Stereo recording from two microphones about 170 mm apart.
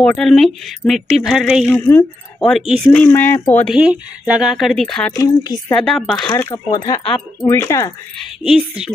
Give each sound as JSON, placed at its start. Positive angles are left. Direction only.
{"t": 0.0, "sound": "speech", "side_deg": 5}
{"t": 1.7, "sound": "speech", "side_deg": 15}
{"t": 3.6, "sound": "speech", "side_deg": -5}
{"t": 5.1, "sound": "speech", "side_deg": 20}
{"t": 5.8, "sound": "speech", "side_deg": 0}
{"t": 6.4, "sound": "speech", "side_deg": 20}
{"t": 8.5, "sound": "speech", "side_deg": -5}